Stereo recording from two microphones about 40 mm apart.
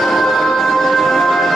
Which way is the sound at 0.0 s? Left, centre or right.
Centre.